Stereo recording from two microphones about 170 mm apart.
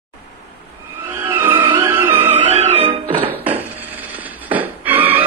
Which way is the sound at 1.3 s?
15° right (ahead or behind).